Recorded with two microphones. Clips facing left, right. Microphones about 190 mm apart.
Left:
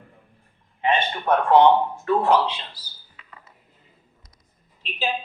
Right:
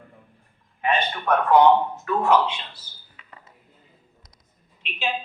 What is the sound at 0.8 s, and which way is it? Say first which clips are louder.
A man's voice: left 1 dB; 25° left (ahead or behind).